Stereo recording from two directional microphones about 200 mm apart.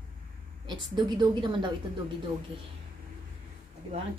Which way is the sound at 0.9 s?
20° right (ahead or behind).